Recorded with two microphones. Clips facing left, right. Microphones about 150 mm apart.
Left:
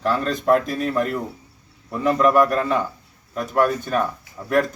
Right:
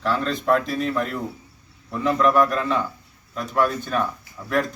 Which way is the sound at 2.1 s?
10° left (ahead or behind).